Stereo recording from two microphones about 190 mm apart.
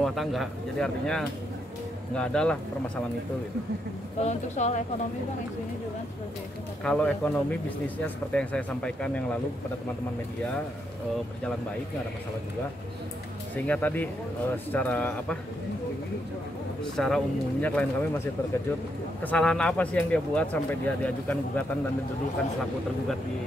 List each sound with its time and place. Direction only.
0.0 s speech: centre (ahead or behind)
4.2 s speech: 35° left (ahead or behind)
6.8 s speech: 5° left (ahead or behind)
13.6 s speech: 10° left (ahead or behind)
16.8 s speech: 5° left (ahead or behind)